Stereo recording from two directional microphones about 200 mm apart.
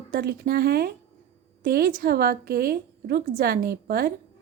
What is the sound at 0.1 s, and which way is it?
A woman's voice, 50° right (ahead or behind).